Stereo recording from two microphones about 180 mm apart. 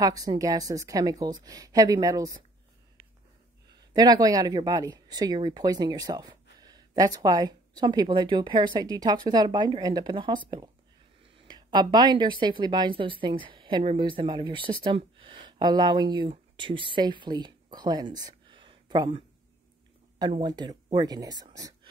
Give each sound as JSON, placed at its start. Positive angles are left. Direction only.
{"t": 0.0, "sound": "a woman's voice", "side_deg": -20}
{"t": 3.9, "sound": "a woman's voice", "side_deg": -20}